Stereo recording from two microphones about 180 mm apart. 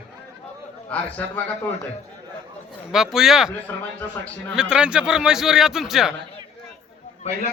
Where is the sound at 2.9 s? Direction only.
Centre (ahead or behind).